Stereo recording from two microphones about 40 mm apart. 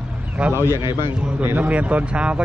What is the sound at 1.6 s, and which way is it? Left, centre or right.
Speech, right.